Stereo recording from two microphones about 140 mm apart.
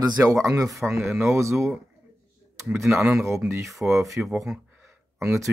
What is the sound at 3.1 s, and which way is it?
Speech, 20° right (ahead or behind).